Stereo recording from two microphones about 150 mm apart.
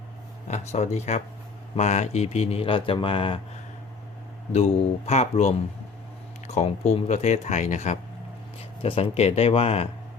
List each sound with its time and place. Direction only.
0.4 s speech: 50° left (ahead or behind)
4.5 s speech: 45° left (ahead or behind)
8.8 s speech: 40° left (ahead or behind)